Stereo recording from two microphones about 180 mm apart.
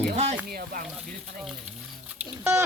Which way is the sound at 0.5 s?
50° right (ahead or behind).